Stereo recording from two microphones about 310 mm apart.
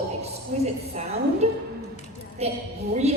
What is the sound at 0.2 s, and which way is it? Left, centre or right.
A woman's voice, right.